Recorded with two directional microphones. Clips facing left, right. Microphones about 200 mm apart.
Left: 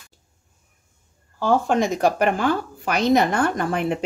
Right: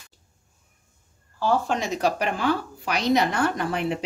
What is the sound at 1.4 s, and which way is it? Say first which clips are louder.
A woman's voice: left 4 dB; 50° left (ahead or behind).